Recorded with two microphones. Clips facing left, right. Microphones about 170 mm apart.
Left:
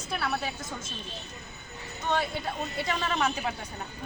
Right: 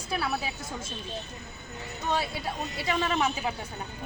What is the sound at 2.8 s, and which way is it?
Speech, 5° right (ahead or behind).